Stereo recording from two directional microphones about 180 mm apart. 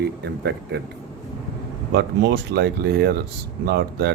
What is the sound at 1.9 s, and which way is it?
Speech, 75° right (ahead or behind).